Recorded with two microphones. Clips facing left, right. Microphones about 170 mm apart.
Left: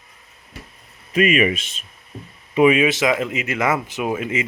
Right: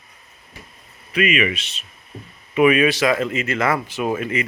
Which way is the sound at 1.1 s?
40° left (ahead or behind).